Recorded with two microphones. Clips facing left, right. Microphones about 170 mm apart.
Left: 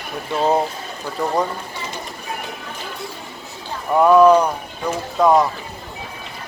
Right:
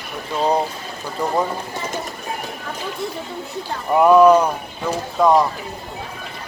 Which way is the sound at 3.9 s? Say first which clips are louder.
Even; 5° right (ahead or behind).